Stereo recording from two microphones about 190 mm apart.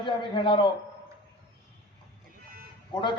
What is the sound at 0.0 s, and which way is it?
Speech, 25° left (ahead or behind).